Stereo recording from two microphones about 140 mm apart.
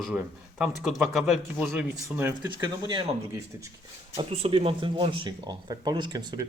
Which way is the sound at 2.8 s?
30° right (ahead or behind).